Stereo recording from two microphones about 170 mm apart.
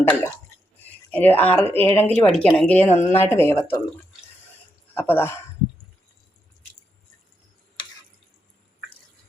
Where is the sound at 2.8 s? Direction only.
45° left (ahead or behind).